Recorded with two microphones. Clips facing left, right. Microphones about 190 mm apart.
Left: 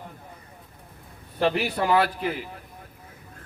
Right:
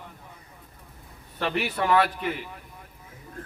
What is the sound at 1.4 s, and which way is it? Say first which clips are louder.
Speech: left 4 dB; 35° left (ahead or behind).